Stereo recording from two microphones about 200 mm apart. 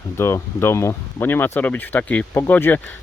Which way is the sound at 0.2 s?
10° left (ahead or behind).